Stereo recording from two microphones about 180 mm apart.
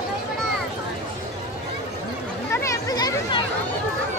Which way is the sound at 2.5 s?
20° left (ahead or behind).